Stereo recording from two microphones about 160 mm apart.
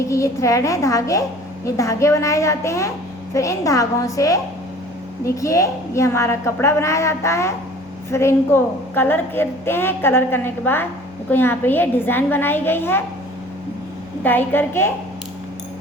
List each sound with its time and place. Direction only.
0.0 s a woman's voice: 20° left (ahead or behind)
14.3 s a woman's voice: 15° left (ahead or behind)